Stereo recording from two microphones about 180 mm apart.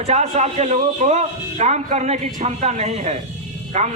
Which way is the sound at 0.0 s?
40° right (ahead or behind).